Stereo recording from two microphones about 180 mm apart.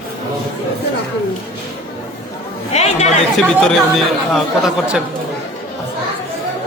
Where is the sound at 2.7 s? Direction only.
35° left (ahead or behind).